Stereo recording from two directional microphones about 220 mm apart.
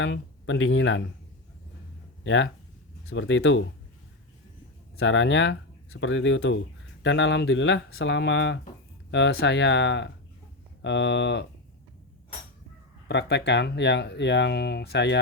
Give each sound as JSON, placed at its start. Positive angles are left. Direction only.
{"t": 0.0, "sound": "speech", "side_deg": 55}
{"t": 2.2, "sound": "speech", "side_deg": 60}
{"t": 4.9, "sound": "speech", "side_deg": 60}
{"t": 13.1, "sound": "speech", "side_deg": 50}